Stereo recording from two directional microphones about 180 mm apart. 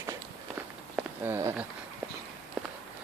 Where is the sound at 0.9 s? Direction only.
10° right (ahead or behind).